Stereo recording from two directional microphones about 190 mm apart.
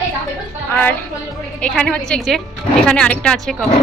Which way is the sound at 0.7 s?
10° left (ahead or behind).